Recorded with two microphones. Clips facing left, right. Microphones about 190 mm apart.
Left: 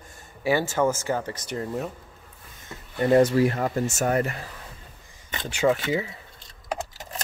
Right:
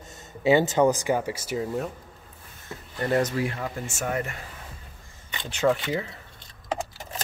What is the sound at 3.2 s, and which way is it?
Speech, 40° left (ahead or behind).